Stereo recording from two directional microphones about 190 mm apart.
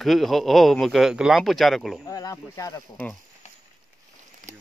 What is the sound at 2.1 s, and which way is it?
Speech, 20° left (ahead or behind).